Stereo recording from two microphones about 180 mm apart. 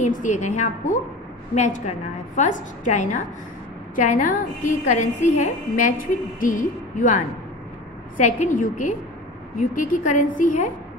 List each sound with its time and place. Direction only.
0.0 s a woman's voice: 45° left (ahead or behind)
8.2 s a woman's voice: 40° left (ahead or behind)